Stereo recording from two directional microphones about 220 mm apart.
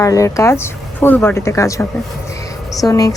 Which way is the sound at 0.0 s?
15° left (ahead or behind).